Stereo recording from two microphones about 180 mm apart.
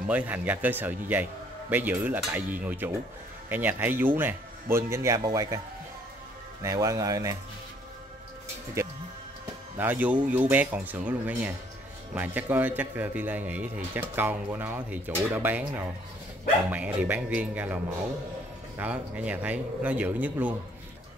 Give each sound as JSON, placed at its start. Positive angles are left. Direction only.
{"t": 0.0, "sound": "a man's voice", "side_deg": -10}
{"t": 6.6, "sound": "speech", "side_deg": -20}
{"t": 9.8, "sound": "a man's voice", "side_deg": -10}
{"t": 18.8, "sound": "a man's voice", "side_deg": -10}